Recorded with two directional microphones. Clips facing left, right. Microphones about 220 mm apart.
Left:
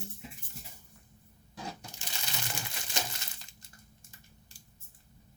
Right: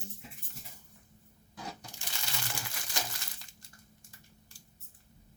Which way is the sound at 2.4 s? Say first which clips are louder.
Left 1 dB; 20° left (ahead or behind).